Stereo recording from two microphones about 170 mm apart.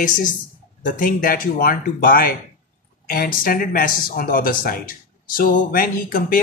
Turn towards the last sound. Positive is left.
turn(degrees=55)  # may be behind; listen again after turning